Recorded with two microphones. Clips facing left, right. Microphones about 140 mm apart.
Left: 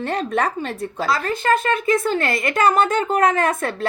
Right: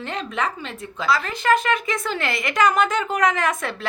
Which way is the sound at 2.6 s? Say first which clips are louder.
Left 2 dB; 30° left (ahead or behind).